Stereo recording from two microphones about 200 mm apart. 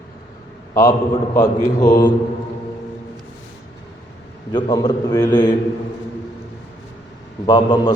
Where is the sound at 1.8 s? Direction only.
45° left (ahead or behind).